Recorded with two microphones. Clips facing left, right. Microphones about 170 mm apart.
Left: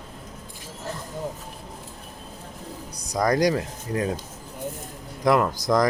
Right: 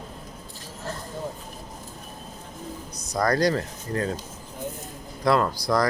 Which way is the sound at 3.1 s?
15° left (ahead or behind).